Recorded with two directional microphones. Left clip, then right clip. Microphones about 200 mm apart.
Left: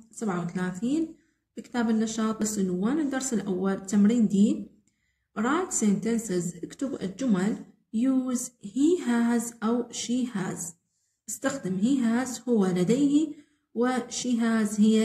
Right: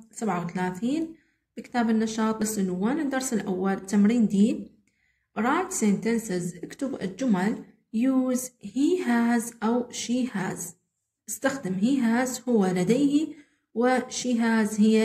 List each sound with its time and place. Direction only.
0.2 s a woman's voice: 10° right (ahead or behind)